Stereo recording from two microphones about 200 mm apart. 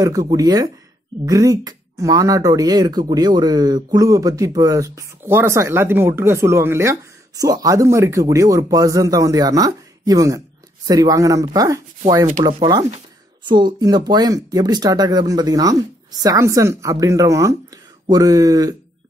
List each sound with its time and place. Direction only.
0.0 s speech: 20° right (ahead or behind)